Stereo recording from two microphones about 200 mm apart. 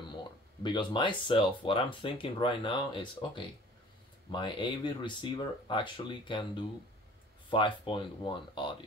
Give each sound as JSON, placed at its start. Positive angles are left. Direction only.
{"t": 0.6, "sound": "speech", "side_deg": 20}